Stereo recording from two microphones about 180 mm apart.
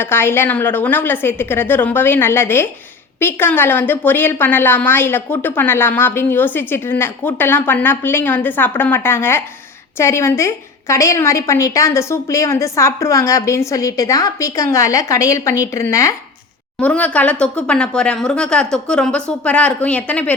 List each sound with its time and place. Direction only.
0.0 s a woman's voice: 10° left (ahead or behind)